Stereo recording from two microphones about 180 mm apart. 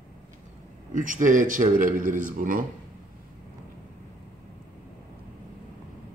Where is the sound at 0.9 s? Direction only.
45° right (ahead or behind).